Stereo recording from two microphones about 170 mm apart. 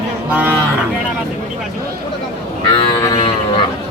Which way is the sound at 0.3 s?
10° right (ahead or behind).